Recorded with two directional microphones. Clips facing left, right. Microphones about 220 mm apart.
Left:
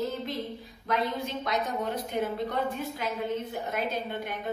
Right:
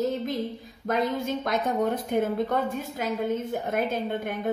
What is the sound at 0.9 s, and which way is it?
A woman's voice, 45° right (ahead or behind).